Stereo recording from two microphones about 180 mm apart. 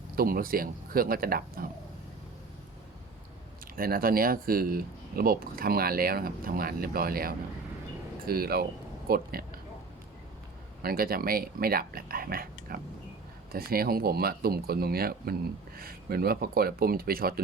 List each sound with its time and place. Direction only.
0.2 s speech: 55° right (ahead or behind)
3.8 s speech: 55° right (ahead or behind)
10.8 s speech: 55° right (ahead or behind)